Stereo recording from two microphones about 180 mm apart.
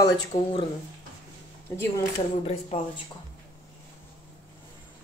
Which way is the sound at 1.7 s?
15° left (ahead or behind).